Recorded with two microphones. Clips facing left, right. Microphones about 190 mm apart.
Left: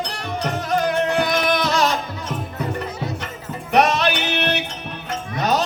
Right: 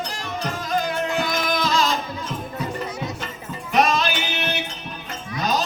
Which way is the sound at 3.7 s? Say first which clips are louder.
Left 3 dB; 65° left (ahead or behind).